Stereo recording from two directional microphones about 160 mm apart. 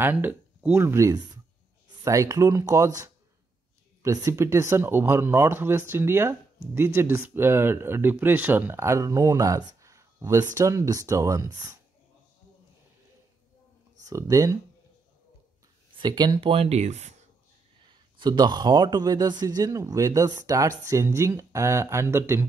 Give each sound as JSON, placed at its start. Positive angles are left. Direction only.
{"t": 0.0, "sound": "speech", "side_deg": -10}
{"t": 14.0, "sound": "speech", "side_deg": -20}
{"t": 16.0, "sound": "speech", "side_deg": -30}
{"t": 17.8, "sound": "speech", "side_deg": -30}